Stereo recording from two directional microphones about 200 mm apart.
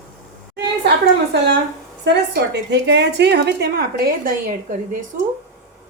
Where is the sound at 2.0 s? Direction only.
60° right (ahead or behind).